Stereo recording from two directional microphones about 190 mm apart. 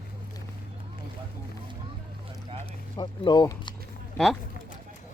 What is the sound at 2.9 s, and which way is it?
Speech, 25° left (ahead or behind).